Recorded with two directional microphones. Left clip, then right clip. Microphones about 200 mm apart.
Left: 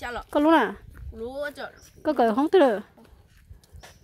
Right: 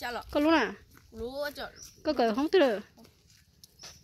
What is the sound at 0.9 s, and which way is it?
Speech, 5° right (ahead or behind).